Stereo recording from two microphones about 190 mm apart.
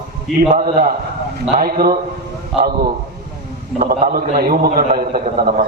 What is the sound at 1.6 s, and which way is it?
Speech, 50° right (ahead or behind).